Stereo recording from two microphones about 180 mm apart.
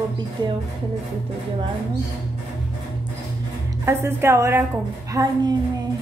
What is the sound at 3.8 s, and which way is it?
A woman's voice, 15° right (ahead or behind).